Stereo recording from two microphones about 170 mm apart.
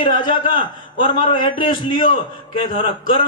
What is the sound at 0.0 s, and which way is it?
A man's voice, 30° left (ahead or behind).